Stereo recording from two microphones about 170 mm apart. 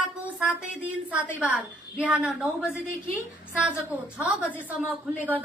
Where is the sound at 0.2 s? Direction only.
10° right (ahead or behind).